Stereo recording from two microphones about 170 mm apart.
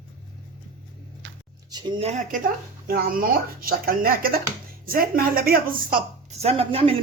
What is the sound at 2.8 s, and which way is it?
Speech, 55° right (ahead or behind).